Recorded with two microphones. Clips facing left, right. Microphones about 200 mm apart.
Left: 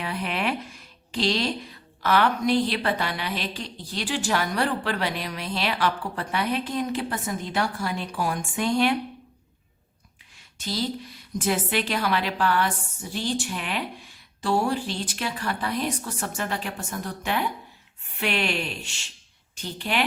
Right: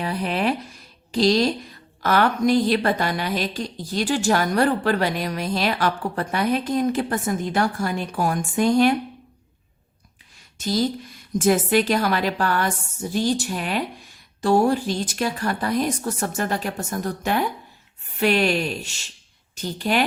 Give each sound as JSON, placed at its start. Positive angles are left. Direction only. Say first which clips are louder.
{"t": 0.0, "sound": "a woman's voice", "louder": "right 5 dB", "side_deg": -35}
{"t": 10.6, "sound": "a woman's voice", "louder": "right 6 dB", "side_deg": -45}